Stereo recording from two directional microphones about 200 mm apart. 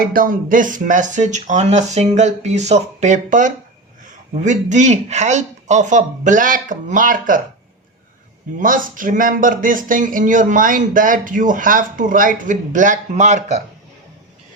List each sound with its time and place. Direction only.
0.0 s speech: 45° right (ahead or behind)
8.5 s speech: 40° right (ahead or behind)